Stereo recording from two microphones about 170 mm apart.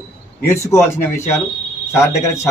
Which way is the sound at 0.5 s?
15° left (ahead or behind).